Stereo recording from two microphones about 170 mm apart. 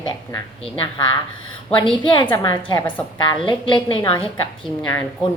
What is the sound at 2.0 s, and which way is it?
A woman's voice, 30° left (ahead or behind).